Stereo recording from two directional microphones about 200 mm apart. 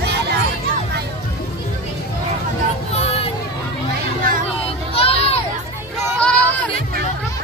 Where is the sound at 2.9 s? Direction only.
30° left (ahead or behind).